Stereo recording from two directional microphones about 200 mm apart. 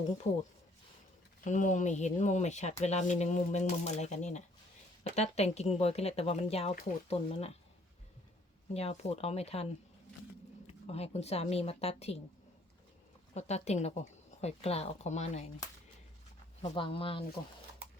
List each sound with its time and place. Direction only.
1.5 s speech: 40° left (ahead or behind)
8.7 s speech: 30° left (ahead or behind)
10.9 s speech: 30° left (ahead or behind)
13.3 s speech: 35° left (ahead or behind)
16.6 s speech: 25° left (ahead or behind)